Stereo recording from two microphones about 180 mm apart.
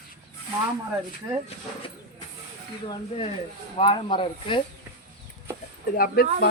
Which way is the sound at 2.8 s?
30° left (ahead or behind).